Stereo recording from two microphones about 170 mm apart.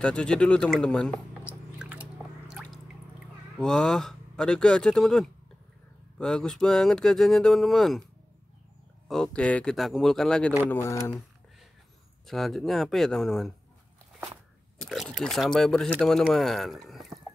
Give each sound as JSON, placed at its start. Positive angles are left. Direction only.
{"t": 0.0, "sound": "speech", "side_deg": 5}
{"t": 1.4, "sound": "squish", "side_deg": -10}
{"t": 3.5, "sound": "speech", "side_deg": 5}
{"t": 9.0, "sound": "speech", "side_deg": 5}
{"t": 10.7, "sound": "speech", "side_deg": 15}
{"t": 12.3, "sound": "speech", "side_deg": 0}
{"t": 14.8, "sound": "speech", "side_deg": 0}